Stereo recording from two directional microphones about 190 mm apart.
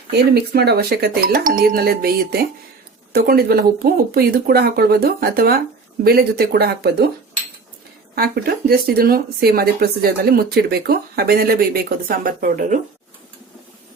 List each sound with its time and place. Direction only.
0.1 s speech: 55° right (ahead or behind)
8.1 s speech: 50° right (ahead or behind)